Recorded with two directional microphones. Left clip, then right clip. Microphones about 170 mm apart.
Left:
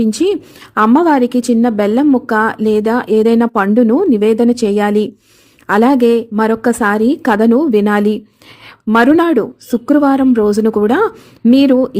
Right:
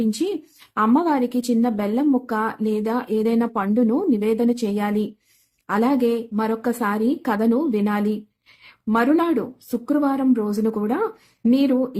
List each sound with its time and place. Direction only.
0.0 s a woman's voice: 45° left (ahead or behind)